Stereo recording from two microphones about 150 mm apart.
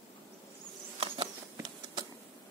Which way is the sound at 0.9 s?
35° right (ahead or behind).